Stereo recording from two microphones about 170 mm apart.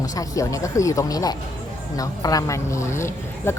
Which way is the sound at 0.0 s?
20° left (ahead or behind).